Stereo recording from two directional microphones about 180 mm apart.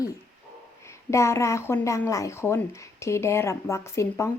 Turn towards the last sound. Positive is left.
turn(degrees=15)  # may be behind; listen again after turning